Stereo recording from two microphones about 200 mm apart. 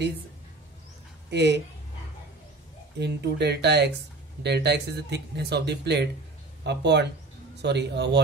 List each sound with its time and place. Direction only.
1.3 s speech: 60° right (ahead or behind)
3.0 s speech: 60° right (ahead or behind)